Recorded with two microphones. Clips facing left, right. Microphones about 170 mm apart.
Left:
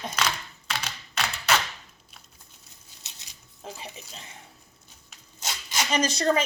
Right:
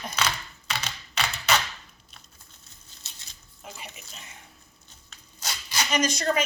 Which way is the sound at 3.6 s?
30° left (ahead or behind).